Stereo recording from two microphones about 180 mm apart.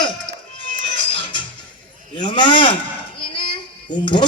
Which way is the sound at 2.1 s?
25° left (ahead or behind).